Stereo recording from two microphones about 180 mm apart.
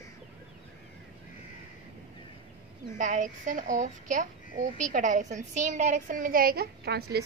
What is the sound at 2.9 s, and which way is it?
A woman's voice, 45° right (ahead or behind).